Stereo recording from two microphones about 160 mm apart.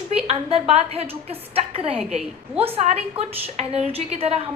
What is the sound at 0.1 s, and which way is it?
A woman's voice, 40° right (ahead or behind).